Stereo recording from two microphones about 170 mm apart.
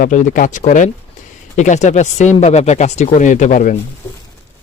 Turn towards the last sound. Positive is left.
turn(degrees=50)  # may be behind; listen again after turning